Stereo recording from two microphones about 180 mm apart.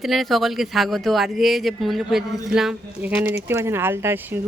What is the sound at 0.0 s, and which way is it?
Speech, centre (ahead or behind).